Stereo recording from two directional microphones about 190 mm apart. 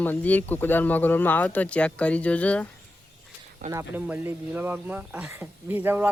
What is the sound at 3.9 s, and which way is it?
Speech, 10° right (ahead or behind).